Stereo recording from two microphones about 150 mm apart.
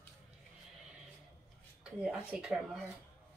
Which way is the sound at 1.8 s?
5° right (ahead or behind).